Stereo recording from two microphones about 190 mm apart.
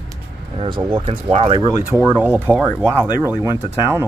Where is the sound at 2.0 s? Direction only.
10° right (ahead or behind).